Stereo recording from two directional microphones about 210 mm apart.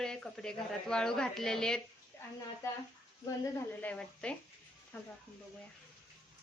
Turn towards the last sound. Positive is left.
turn(degrees=10)  # may be behind; listen again after turning